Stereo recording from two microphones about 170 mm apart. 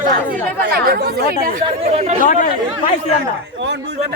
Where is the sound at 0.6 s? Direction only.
70° right (ahead or behind).